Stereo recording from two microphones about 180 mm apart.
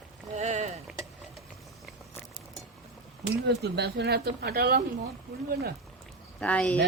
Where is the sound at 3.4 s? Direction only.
70° right (ahead or behind).